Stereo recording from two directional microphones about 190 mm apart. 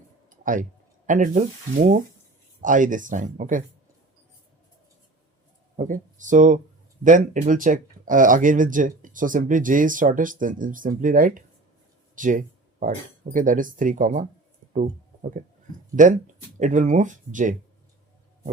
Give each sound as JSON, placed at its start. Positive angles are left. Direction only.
{"t": 0.3, "sound": "speech", "side_deg": -45}
{"t": 5.7, "sound": "speech", "side_deg": -40}
{"t": 12.1, "sound": "a sound", "side_deg": -45}
{"t": 13.3, "sound": "speech", "side_deg": -45}
{"t": 14.7, "sound": "a sound", "side_deg": -40}
{"t": 16.0, "sound": "speech", "side_deg": -40}